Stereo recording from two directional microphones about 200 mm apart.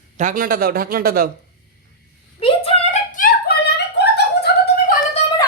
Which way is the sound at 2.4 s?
30° left (ahead or behind).